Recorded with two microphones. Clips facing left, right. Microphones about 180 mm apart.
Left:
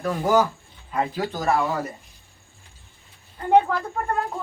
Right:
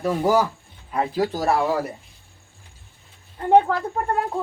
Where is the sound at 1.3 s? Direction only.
35° right (ahead or behind).